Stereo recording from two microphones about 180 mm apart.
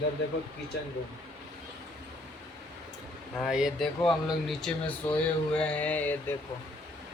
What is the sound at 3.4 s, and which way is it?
Speech, 5° right (ahead or behind).